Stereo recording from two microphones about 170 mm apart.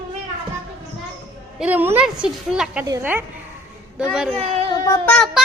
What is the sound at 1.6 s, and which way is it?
A woman's voice, 10° right (ahead or behind).